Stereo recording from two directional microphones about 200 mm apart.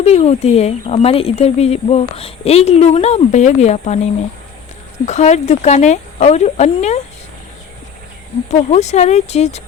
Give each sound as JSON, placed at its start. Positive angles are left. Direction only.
{"t": 0.0, "sound": "speech", "side_deg": 30}
{"t": 5.0, "sound": "speech", "side_deg": 35}
{"t": 8.4, "sound": "speech", "side_deg": 35}